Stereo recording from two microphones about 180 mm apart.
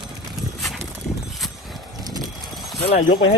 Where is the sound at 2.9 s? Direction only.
30° left (ahead or behind).